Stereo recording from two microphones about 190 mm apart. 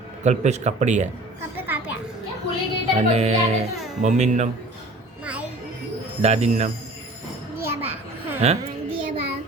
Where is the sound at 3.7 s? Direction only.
Centre (ahead or behind).